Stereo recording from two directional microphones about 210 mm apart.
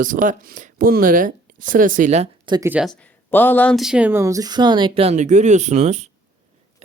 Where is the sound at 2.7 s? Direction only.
5° right (ahead or behind).